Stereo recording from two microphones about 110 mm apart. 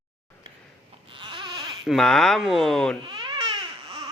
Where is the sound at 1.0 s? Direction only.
50° right (ahead or behind).